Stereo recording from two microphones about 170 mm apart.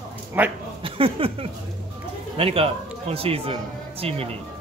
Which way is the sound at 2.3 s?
35° right (ahead or behind).